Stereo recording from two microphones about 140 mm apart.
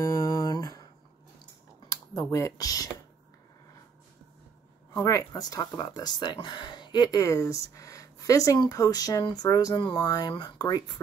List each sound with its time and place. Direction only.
0.0 s a sound: 25° left (ahead or behind)
1.9 s speech: 25° left (ahead or behind)
4.9 s speech: 20° left (ahead or behind)